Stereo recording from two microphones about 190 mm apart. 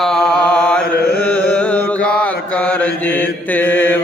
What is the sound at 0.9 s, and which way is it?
Mantra, 55° left (ahead or behind).